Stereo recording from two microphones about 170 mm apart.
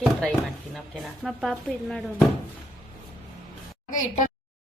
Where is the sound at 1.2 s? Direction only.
Centre (ahead or behind).